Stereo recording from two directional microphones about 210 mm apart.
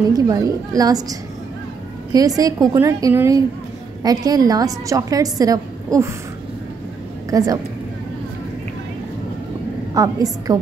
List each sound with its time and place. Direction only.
0.1 s a woman's voice: 15° right (ahead or behind)
2.1 s a woman's voice: 15° right (ahead or behind)
7.2 s a woman's voice: 15° right (ahead or behind)
9.9 s a woman's voice: 15° right (ahead or behind)